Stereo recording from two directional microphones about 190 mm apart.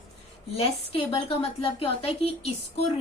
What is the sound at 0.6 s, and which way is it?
A woman's voice, 30° left (ahead or behind).